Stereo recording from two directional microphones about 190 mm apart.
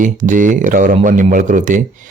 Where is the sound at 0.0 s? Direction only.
40° right (ahead or behind).